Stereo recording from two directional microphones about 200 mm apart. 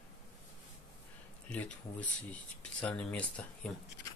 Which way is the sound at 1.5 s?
5° left (ahead or behind).